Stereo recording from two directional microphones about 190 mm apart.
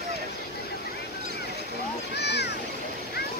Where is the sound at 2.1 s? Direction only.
60° left (ahead or behind).